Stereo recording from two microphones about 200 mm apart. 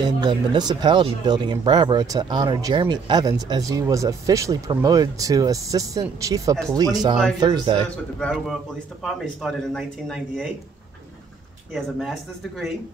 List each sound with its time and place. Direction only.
0.0 s speech: 20° right (ahead or behind)
7.8 s speech: centre (ahead or behind)
11.7 s speech: centre (ahead or behind)